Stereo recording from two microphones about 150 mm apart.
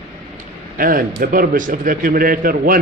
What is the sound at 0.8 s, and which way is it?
A man's voice, 70° right (ahead or behind).